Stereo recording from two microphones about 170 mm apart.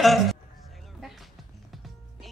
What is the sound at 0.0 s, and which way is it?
Speech, centre (ahead or behind).